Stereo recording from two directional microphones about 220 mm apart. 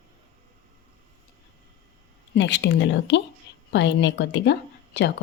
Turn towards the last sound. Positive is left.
turn(degrees=50)  # may be behind; listen again after turning